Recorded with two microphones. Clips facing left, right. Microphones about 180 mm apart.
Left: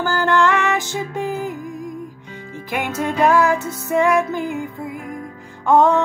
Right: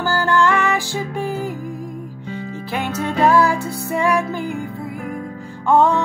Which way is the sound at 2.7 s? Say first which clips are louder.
Left 1 dB; 15° left (ahead or behind).